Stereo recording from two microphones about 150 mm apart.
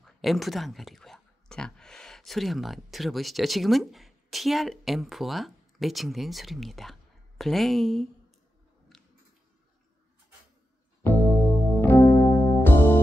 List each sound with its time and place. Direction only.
0.0 s speech: centre (ahead or behind)
8.9 s a sound: centre (ahead or behind)
11.0 s music: 15° left (ahead or behind)